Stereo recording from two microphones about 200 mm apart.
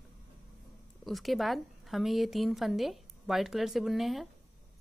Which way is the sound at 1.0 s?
Centre (ahead or behind).